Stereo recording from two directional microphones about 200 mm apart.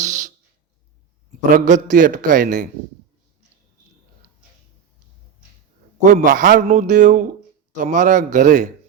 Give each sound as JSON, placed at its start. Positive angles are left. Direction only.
{"t": 0.0, "sound": "a sound", "side_deg": -40}
{"t": 1.5, "sound": "a man's voice", "side_deg": -40}
{"t": 6.0, "sound": "a man's voice", "side_deg": -40}